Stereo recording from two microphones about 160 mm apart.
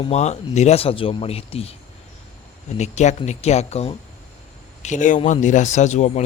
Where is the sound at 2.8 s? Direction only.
45° left (ahead or behind).